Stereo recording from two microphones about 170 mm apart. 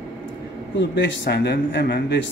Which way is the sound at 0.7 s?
90° left.